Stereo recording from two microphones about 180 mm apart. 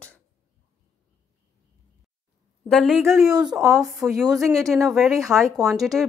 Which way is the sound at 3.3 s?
5° right (ahead or behind).